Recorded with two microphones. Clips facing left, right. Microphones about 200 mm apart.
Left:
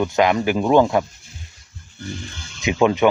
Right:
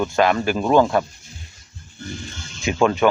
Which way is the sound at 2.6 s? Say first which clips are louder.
Left 1 dB; 20° left (ahead or behind).